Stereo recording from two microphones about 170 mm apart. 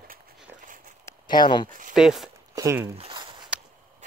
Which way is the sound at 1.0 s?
25° left (ahead or behind).